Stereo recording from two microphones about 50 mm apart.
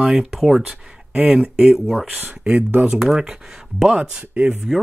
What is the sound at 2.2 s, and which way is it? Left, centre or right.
Speech, right.